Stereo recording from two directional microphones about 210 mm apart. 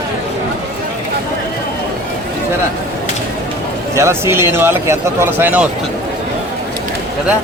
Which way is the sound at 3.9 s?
10° right (ahead or behind).